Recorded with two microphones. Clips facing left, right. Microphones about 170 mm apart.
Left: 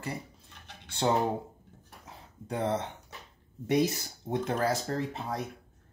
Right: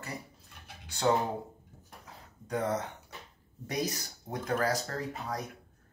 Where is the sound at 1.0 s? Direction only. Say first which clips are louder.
Even; 25° left (ahead or behind).